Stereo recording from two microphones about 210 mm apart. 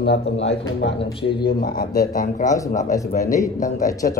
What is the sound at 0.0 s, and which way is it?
Speech, 55° left (ahead or behind).